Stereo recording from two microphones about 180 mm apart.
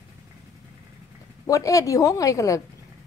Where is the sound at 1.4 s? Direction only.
20° left (ahead or behind).